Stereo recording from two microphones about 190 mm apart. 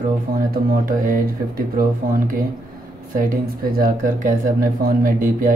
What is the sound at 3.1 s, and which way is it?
Speech, 45° right (ahead or behind).